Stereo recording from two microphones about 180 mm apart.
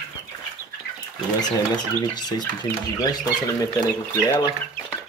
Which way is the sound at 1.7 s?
25° left (ahead or behind).